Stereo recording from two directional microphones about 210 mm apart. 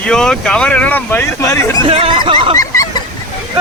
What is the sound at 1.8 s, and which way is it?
Speech, 30° right (ahead or behind).